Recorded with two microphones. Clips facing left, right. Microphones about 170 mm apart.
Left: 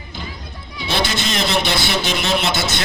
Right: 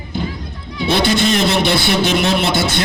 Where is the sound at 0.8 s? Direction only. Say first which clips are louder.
Right 7 dB; 55° right (ahead or behind).